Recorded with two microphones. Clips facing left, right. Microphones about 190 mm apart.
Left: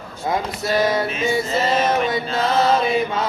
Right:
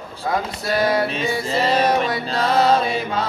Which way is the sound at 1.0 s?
35° right (ahead or behind).